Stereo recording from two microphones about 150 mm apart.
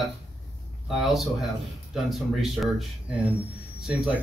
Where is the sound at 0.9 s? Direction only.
Centre (ahead or behind).